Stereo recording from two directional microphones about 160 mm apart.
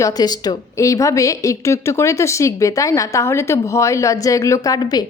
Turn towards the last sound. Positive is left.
turn(degrees=25)  # may be behind; listen again after turning